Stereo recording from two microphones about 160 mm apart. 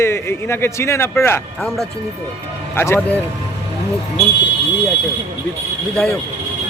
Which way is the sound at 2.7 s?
15° left (ahead or behind).